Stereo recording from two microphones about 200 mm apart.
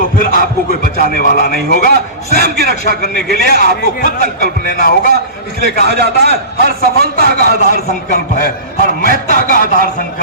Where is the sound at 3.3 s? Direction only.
50° right (ahead or behind).